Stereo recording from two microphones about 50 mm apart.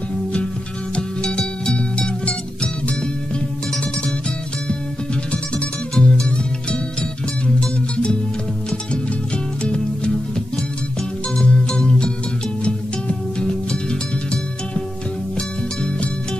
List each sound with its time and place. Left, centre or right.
0.9 s music: left
5.9 s music: centre
11.3 s music: centre
13.4 s music: centre